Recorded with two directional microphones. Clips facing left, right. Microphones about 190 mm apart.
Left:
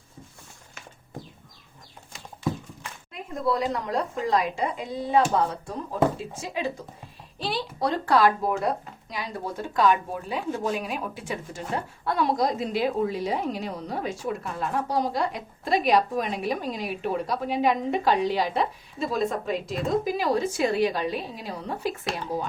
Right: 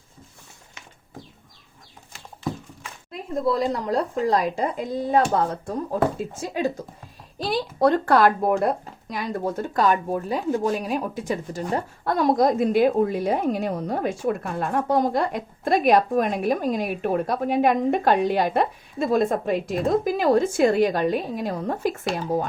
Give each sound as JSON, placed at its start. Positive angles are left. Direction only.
{"t": 3.1, "sound": "a woman's voice", "side_deg": -35}